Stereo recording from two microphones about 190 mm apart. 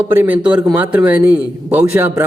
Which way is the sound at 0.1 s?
10° right (ahead or behind).